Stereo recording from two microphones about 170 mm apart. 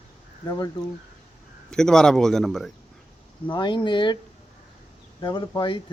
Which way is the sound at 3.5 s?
25° left (ahead or behind).